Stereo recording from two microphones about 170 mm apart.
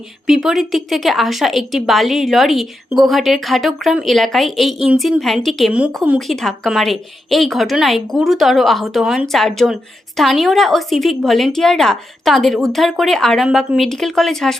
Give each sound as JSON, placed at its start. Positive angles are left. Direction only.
{"t": 0.3, "sound": "a woman's voice", "side_deg": 0}